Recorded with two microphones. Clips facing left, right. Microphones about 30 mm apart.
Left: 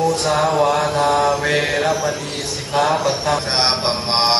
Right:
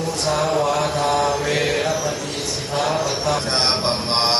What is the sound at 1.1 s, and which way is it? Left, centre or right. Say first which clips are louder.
Mantra: left 3 dB; left.